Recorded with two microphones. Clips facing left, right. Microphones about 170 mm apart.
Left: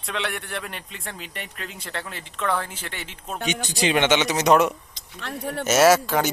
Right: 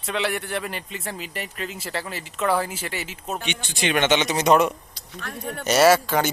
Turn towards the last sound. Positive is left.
turn(degrees=0)  # may be behind; listen again after turning